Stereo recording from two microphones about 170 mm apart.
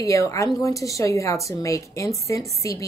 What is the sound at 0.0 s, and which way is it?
A woman's voice, 20° left (ahead or behind).